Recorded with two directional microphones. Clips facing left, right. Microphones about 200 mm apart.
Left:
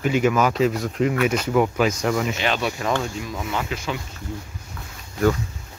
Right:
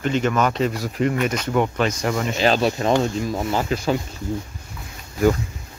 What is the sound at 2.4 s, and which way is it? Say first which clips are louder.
Speech: right 5 dB; 35° right (ahead or behind).